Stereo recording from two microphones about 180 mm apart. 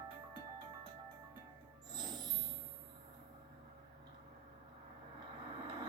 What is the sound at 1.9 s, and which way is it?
Music, 25° right (ahead or behind).